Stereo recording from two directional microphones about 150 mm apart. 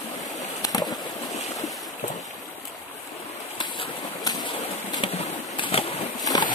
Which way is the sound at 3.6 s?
30° left (ahead or behind).